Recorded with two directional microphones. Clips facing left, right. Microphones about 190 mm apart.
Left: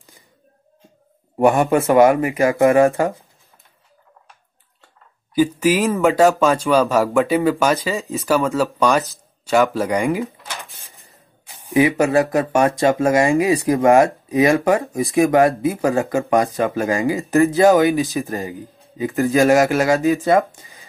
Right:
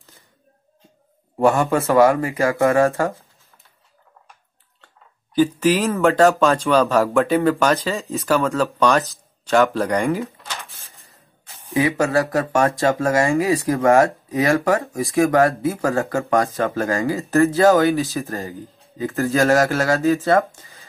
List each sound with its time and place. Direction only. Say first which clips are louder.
1.4 s speech: left 2 dB; 15° left (ahead or behind)
5.3 s speech: even; 10° left (ahead or behind)
8.0 s speech: left 1 dB; centre (ahead or behind)
8.5 s speech: left 1 dB; 10° left (ahead or behind)